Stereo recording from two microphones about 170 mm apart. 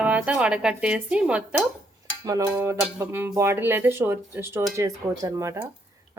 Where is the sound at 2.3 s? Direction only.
20° right (ahead or behind).